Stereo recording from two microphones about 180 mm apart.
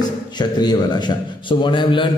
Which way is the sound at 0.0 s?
25° left (ahead or behind).